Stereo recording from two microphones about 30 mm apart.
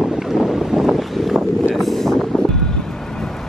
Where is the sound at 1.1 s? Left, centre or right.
Centre.